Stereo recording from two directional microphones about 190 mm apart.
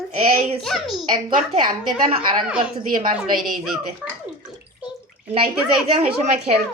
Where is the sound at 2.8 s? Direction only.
45° right (ahead or behind).